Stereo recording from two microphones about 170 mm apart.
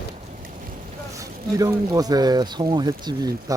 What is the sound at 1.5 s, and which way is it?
Speech, 20° right (ahead or behind).